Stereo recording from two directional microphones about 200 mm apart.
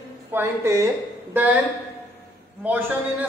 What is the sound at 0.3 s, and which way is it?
Speech, 10° right (ahead or behind).